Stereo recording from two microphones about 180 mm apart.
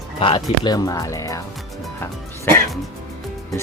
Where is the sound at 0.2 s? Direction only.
30° left (ahead or behind).